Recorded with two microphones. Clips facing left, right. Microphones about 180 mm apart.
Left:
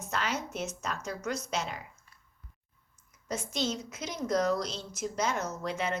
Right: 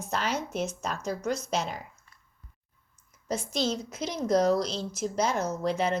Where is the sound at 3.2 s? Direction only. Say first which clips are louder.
Right 4 dB; 35° right (ahead or behind).